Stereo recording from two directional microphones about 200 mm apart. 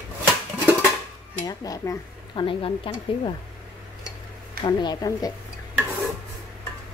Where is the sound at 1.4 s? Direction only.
20° left (ahead or behind).